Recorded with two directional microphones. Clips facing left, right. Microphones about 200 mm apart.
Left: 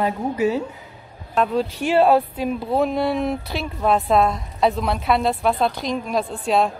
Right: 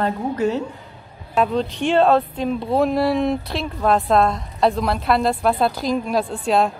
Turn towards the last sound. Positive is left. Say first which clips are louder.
# right 1 dB
turn(degrees=0)  # may be behind; listen again after turning